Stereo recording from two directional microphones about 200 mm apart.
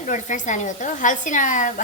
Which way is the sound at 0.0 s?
40° left (ahead or behind).